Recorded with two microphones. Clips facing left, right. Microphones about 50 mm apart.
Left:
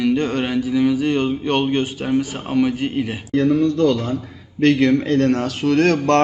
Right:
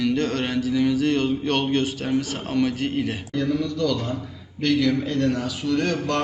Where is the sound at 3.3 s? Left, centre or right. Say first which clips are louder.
Left 12 dB; left.